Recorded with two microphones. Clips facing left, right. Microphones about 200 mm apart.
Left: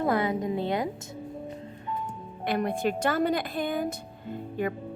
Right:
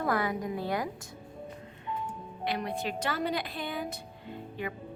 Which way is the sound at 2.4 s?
50° left (ahead or behind).